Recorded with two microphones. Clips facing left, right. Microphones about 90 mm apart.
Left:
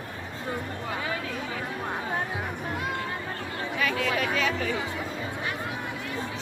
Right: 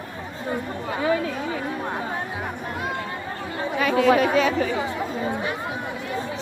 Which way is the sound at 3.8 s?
25° right (ahead or behind).